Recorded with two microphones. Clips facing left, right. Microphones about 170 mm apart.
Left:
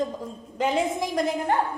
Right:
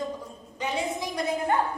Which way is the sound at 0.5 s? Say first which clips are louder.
Left 6 dB; 90° left.